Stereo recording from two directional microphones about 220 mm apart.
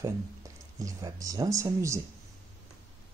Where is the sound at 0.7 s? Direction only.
15° right (ahead or behind).